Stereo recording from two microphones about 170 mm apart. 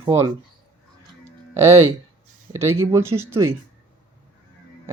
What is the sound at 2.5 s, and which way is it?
Speech, 15° right (ahead or behind).